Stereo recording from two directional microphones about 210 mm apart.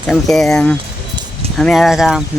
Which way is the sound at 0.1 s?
5° left (ahead or behind).